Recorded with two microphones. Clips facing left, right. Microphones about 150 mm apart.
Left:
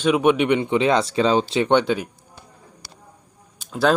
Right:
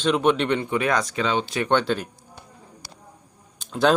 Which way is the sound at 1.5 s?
20° left (ahead or behind).